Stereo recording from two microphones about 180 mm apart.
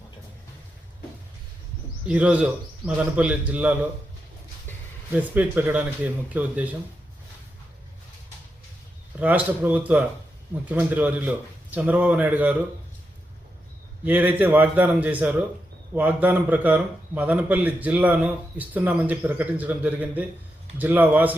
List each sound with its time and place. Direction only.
2.0 s a man's voice: 5° right (ahead or behind)
5.1 s a man's voice: 10° right (ahead or behind)
9.1 s a man's voice: 10° right (ahead or behind)
14.0 s a man's voice: 10° right (ahead or behind)